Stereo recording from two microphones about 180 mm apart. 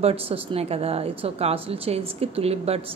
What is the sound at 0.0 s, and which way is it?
A woman's voice, 35° right (ahead or behind).